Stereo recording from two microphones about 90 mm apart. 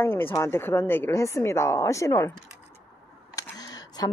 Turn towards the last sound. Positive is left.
turn(degrees=45)  # may be behind; listen again after turning